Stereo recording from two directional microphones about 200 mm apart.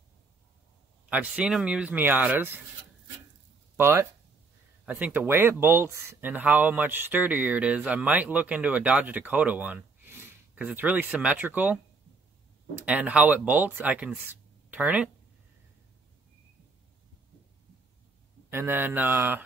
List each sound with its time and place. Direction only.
1.1 s speech: 5° right (ahead or behind)
3.7 s speech: 10° right (ahead or behind)
12.8 s speech: 5° right (ahead or behind)
18.5 s speech: 10° right (ahead or behind)